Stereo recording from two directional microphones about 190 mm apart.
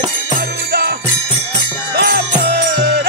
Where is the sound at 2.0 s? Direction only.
55° right (ahead or behind).